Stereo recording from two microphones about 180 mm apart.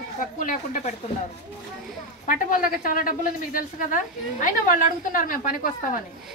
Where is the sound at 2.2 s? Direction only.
50° left (ahead or behind).